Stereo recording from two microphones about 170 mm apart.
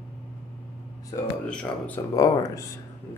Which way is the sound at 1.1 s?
25° left (ahead or behind).